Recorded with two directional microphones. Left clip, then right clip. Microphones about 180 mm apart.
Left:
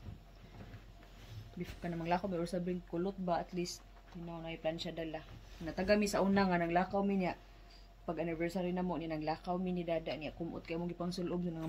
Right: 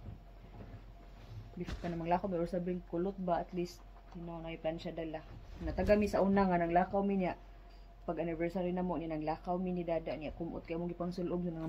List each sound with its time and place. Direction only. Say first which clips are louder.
1.6 s speech: right 2 dB; 15° left (ahead or behind)